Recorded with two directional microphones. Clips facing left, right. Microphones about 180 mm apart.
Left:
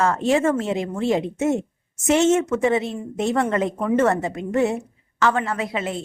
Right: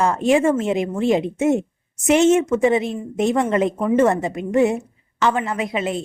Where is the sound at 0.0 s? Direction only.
15° right (ahead or behind).